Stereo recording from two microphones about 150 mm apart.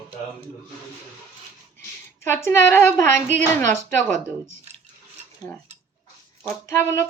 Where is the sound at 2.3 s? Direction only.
15° left (ahead or behind).